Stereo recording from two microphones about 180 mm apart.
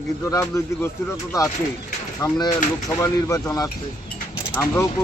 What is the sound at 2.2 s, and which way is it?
Speech, 20° left (ahead or behind).